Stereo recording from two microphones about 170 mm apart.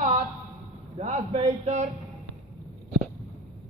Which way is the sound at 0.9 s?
45° right (ahead or behind).